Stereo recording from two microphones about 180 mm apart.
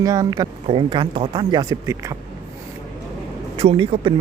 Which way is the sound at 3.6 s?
30° right (ahead or behind).